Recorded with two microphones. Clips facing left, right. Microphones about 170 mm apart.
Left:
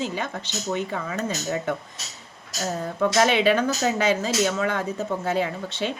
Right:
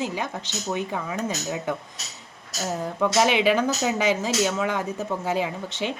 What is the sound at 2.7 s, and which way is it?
Speech, 10° right (ahead or behind).